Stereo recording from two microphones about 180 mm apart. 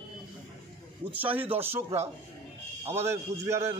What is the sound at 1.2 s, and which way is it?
A man's voice, 10° right (ahead or behind).